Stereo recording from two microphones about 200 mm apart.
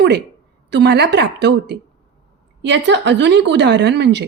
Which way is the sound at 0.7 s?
60° right (ahead or behind).